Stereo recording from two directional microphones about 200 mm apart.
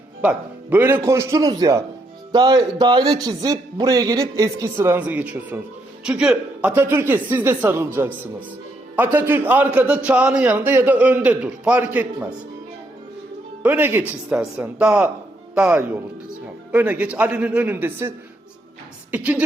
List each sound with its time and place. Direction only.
0.2 s a man's voice: 10° right (ahead or behind)
13.6 s a man's voice: 10° right (ahead or behind)
19.1 s a man's voice: 10° right (ahead or behind)